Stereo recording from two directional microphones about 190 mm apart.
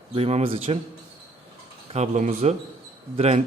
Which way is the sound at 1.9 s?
35° right (ahead or behind).